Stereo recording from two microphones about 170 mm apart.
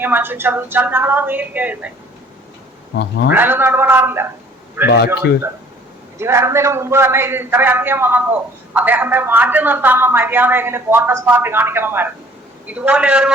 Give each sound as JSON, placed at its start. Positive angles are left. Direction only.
{"t": 0.0, "sound": "a man's voice", "side_deg": -10}
{"t": 3.3, "sound": "a man's voice", "side_deg": -10}
{"t": 4.9, "sound": "speech", "side_deg": 75}
{"t": 6.1, "sound": "a man's voice", "side_deg": -15}